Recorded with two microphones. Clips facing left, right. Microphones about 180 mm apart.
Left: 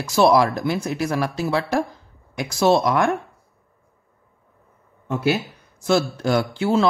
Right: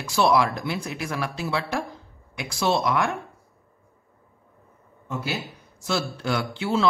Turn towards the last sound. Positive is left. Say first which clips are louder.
# left 4 dB
turn(degrees=45)  # may be behind; listen again after turning